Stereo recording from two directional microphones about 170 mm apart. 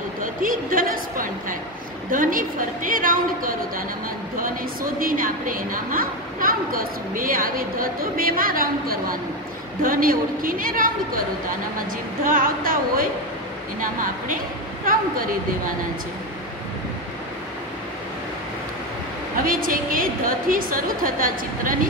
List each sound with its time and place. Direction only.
0.2 s a woman's voice: 55° right (ahead or behind)
19.4 s a woman's voice: 55° right (ahead or behind)